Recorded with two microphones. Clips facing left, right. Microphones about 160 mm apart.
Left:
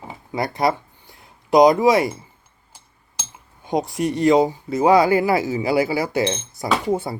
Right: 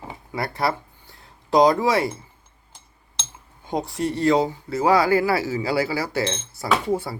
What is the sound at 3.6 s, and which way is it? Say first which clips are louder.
Speech: left 3 dB; 15° left (ahead or behind).